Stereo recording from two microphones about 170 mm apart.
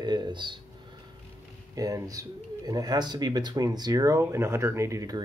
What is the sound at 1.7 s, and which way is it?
Speech, 20° right (ahead or behind).